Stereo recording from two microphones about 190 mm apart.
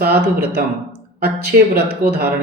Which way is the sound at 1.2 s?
55° right (ahead or behind).